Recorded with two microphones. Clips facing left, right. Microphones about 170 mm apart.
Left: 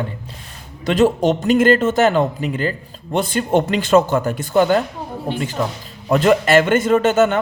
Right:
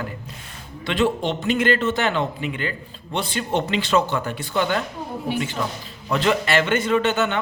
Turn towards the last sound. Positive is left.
turn(degrees=45)  # may be behind; listen again after turning